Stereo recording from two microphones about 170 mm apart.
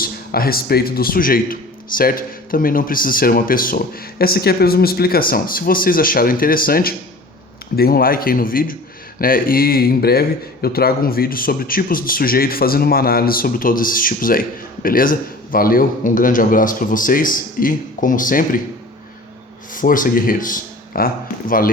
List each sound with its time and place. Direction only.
0.0 s a man's voice: 60° left (ahead or behind)
19.7 s speech: 50° left (ahead or behind)